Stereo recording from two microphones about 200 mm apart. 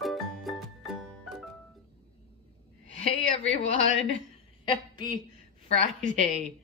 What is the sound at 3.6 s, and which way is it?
A woman's voice, 30° left (ahead or behind).